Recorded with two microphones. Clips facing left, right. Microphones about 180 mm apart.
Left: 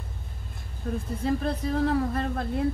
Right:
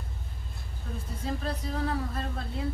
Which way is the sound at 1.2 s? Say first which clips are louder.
Left 6 dB; 55° left (ahead or behind).